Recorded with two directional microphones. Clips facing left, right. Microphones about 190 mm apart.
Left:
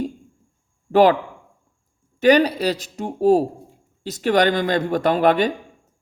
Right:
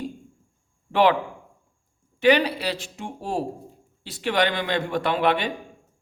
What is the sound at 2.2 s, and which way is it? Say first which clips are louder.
Speech: left 4 dB; 40° left (ahead or behind).